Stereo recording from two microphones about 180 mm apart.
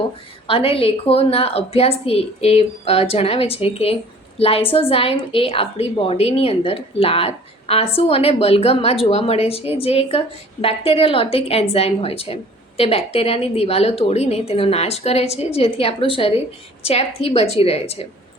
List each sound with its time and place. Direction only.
0.4 s a woman's voice: 30° left (ahead or behind)